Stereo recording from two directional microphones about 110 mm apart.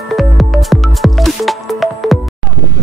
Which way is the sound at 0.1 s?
Centre (ahead or behind).